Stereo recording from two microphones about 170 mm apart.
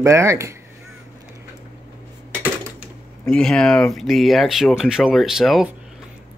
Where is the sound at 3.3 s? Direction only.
5° left (ahead or behind).